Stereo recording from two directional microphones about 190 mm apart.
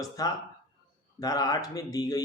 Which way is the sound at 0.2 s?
20° left (ahead or behind).